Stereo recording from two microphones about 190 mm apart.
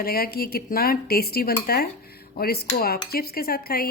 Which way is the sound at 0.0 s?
50° left (ahead or behind).